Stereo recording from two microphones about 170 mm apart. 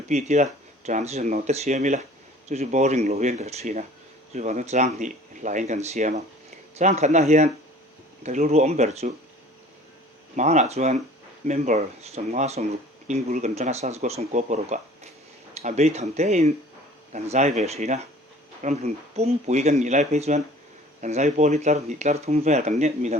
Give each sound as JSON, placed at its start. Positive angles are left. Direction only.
{"t": 0.1, "sound": "speech", "side_deg": -45}
{"t": 10.3, "sound": "speech", "side_deg": -45}